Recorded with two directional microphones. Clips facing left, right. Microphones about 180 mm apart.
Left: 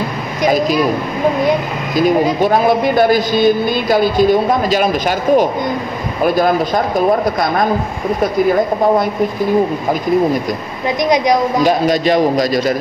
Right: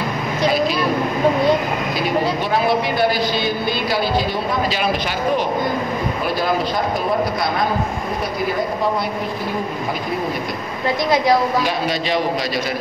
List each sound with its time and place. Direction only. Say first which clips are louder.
2.4 s speech: left 6 dB; 45° left (ahead or behind)
11.1 s speech: left 3 dB; 15° left (ahead or behind)
11.6 s speech: left 8 dB; 45° left (ahead or behind)